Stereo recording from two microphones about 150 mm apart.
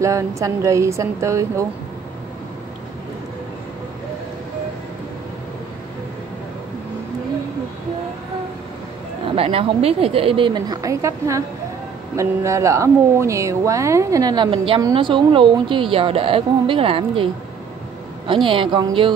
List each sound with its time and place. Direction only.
0.0 s speech: 20° right (ahead or behind)
9.3 s a woman's voice: 40° right (ahead or behind)